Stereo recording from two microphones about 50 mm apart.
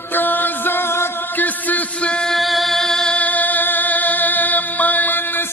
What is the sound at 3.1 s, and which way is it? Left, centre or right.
Music, left.